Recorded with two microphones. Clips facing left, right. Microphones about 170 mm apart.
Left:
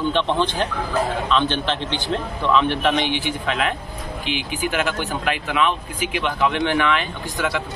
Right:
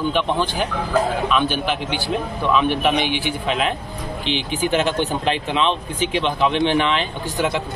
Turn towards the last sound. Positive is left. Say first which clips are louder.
# right 3 dB
turn(degrees=-20)  # may be behind; listen again after turning